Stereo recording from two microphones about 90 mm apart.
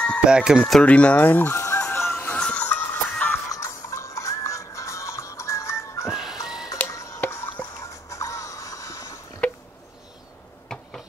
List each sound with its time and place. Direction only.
0.2 s speech: 10° right (ahead or behind)
0.8 s chicken: 15° left (ahead or behind)
2.3 s music: 15° left (ahead or behind)
3.4 s music: 35° left (ahead or behind)
6.0 s music: 5° right (ahead or behind)
6.9 s a sound: 35° left (ahead or behind)
7.2 s music: 25° left (ahead or behind)
10.7 s a sound: 10° left (ahead or behind)